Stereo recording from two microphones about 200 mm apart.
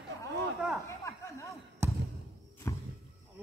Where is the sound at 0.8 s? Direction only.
15° left (ahead or behind).